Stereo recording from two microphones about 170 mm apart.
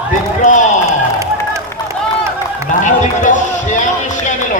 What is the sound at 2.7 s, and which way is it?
Run, 50° left (ahead or behind).